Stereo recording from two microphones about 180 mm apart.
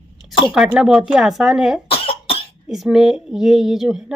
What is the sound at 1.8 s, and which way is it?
Cough, 30° left (ahead or behind).